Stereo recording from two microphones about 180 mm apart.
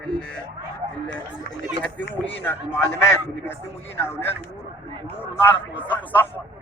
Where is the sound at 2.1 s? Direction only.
10° left (ahead or behind).